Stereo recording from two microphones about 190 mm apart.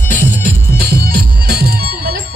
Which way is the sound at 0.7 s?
55° right (ahead or behind).